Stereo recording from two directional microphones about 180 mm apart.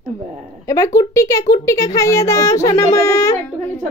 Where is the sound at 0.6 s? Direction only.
15° left (ahead or behind).